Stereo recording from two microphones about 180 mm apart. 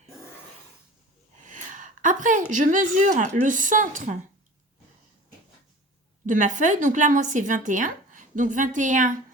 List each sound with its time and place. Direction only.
1.5 s a sound: 45° right (ahead or behind)
2.5 s a woman's voice: 45° right (ahead or behind)
6.2 s a woman's voice: 45° right (ahead or behind)